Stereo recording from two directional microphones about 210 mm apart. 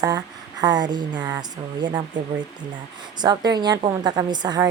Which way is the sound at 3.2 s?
20° right (ahead or behind).